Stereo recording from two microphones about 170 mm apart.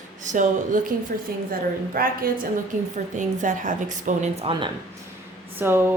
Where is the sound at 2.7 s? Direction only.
50° right (ahead or behind).